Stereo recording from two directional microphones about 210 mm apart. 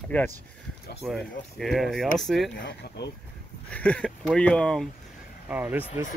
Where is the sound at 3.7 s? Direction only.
5° left (ahead or behind).